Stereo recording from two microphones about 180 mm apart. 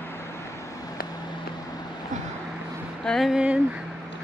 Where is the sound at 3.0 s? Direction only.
Centre (ahead or behind).